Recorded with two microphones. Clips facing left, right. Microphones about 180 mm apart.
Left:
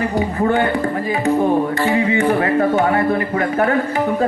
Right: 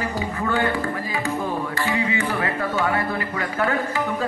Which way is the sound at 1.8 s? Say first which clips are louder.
Left 7 dB; 25° left (ahead or behind).